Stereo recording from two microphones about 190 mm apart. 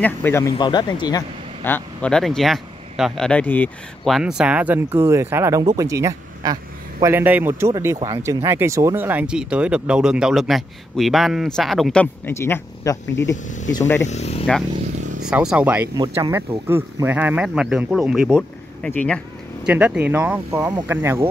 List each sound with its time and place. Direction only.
0.0 s speech: 10° left (ahead or behind)
1.6 s speech: 10° left (ahead or behind)
14.0 s speech: 35° left (ahead or behind)
15.2 s speech: 5° right (ahead or behind)
19.6 s speech: 5° right (ahead or behind)